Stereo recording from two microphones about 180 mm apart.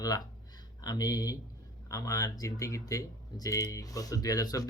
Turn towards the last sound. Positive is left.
turn(degrees=20)  # may be behind; listen again after turning